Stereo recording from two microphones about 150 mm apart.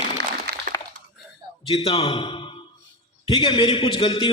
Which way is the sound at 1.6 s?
40° left (ahead or behind).